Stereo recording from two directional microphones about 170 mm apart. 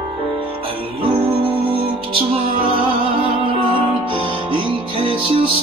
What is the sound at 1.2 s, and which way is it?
Music, 30° right (ahead or behind).